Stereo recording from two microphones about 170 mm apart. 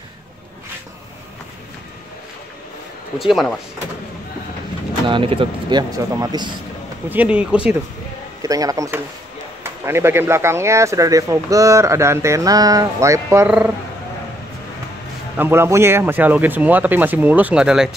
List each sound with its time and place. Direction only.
3.2 s speech: centre (ahead or behind)
5.0 s speech: 30° right (ahead or behind)
7.1 s speech: 10° right (ahead or behind)
8.4 s speech: 20° right (ahead or behind)
15.3 s speech: 15° right (ahead or behind)